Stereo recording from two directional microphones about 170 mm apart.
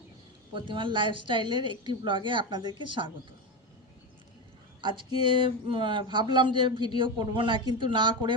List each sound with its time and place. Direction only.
0.5 s speech: 30° right (ahead or behind)
4.8 s speech: 25° right (ahead or behind)